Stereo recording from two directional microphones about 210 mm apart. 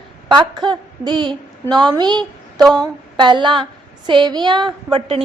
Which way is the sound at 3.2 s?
20° right (ahead or behind).